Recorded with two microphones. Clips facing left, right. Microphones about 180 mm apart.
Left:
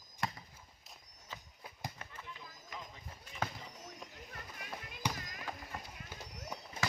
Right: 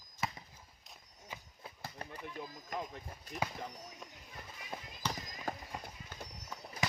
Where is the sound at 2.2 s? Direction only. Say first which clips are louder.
Right 8 dB; 55° right (ahead or behind).